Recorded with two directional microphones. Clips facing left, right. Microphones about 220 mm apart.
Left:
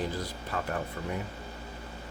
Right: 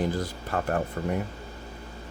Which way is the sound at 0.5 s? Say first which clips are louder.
Right 5 dB; 50° right (ahead or behind).